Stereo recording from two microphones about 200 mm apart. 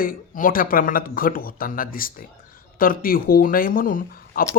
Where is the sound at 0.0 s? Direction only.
45° left (ahead or behind).